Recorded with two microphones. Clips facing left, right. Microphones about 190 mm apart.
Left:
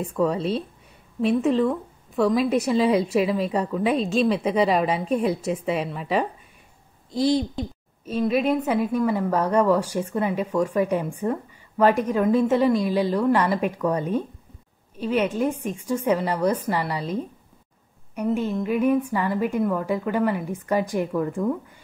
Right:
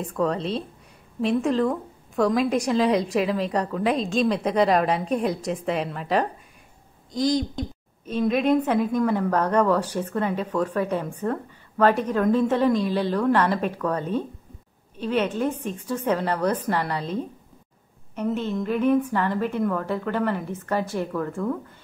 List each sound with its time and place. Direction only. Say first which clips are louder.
0.0 s a woman's voice: left 2 dB; 5° left (ahead or behind)